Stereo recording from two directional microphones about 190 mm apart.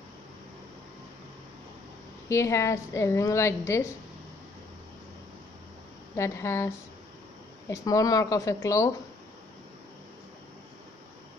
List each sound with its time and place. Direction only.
2.2 s a woman's voice: 15° left (ahead or behind)
6.1 s a woman's voice: 15° left (ahead or behind)
7.7 s a woman's voice: 20° left (ahead or behind)